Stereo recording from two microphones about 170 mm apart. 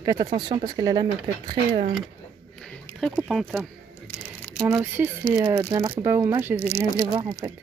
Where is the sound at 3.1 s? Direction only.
5° right (ahead or behind).